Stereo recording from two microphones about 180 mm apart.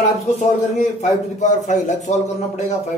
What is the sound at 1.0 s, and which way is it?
A man's voice, 40° left (ahead or behind).